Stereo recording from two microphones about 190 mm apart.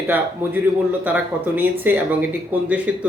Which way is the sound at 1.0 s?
10° right (ahead or behind).